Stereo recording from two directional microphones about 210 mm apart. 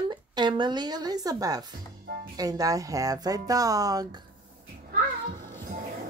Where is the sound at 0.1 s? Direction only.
20° right (ahead or behind).